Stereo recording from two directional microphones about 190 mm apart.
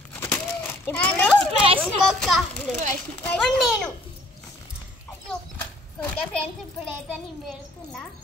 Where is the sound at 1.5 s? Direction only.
30° right (ahead or behind).